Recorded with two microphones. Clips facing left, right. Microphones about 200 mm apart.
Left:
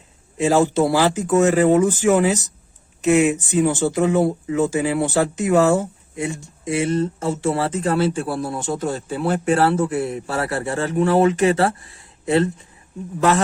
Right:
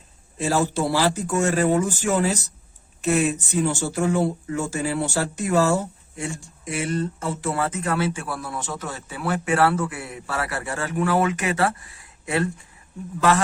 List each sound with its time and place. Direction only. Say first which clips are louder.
0.3 s speech: left 6 dB; 20° left (ahead or behind)